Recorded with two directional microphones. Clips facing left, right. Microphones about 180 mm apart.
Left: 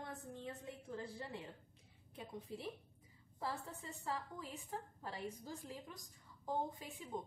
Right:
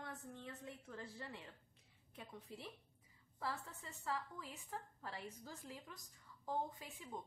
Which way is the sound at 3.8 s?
15° left (ahead or behind).